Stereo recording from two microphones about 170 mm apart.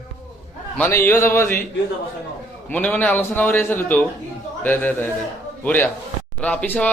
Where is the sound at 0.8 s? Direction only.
15° left (ahead or behind).